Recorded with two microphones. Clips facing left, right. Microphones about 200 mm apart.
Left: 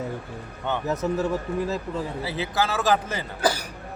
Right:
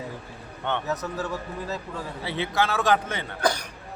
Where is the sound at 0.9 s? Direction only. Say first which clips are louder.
Left 5 dB; 25° left (ahead or behind).